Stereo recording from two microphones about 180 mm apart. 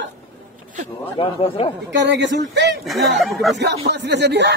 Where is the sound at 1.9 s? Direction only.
75° right (ahead or behind).